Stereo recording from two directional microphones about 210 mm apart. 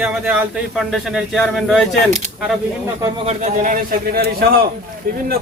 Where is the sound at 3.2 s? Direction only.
35° right (ahead or behind).